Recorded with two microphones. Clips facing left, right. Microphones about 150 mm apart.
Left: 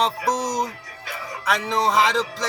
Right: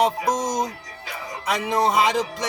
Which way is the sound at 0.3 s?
25° right (ahead or behind).